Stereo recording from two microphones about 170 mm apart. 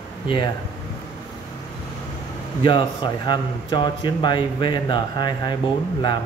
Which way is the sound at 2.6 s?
30° left (ahead or behind).